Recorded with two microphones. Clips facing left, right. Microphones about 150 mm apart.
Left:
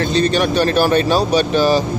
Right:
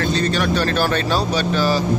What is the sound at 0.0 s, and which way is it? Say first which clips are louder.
Speech: left 4 dB; 20° left (ahead or behind).